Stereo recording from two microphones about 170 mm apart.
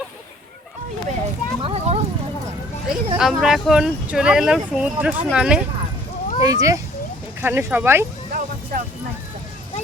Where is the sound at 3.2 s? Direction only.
Centre (ahead or behind).